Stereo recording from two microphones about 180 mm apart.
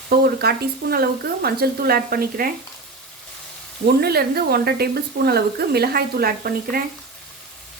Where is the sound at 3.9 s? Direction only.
60° right (ahead or behind).